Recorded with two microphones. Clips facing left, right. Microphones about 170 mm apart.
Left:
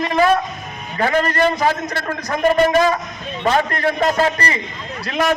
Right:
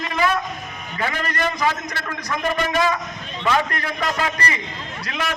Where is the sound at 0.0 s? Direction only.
35° left (ahead or behind).